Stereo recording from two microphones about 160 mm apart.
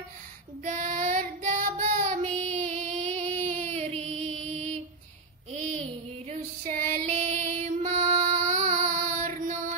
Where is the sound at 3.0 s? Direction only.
45° right (ahead or behind).